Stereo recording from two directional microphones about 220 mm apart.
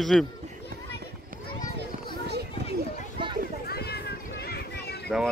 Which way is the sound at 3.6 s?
45° left (ahead or behind).